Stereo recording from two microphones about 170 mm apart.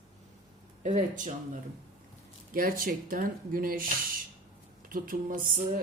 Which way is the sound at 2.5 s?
55° right (ahead or behind).